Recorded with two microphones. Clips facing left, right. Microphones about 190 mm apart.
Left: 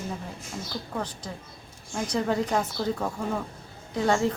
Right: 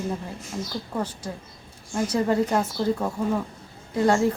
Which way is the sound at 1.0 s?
10° right (ahead or behind).